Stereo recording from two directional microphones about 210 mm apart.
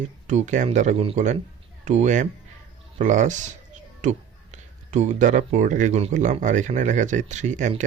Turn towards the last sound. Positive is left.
turn(degrees=-35)  # may be behind; listen again after turning